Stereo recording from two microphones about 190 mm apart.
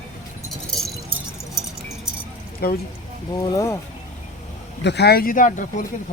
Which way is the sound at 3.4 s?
15° left (ahead or behind).